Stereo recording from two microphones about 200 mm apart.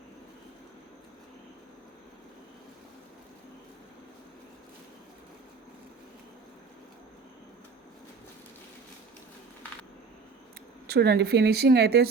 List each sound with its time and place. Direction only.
10.8 s speech: 50° right (ahead or behind)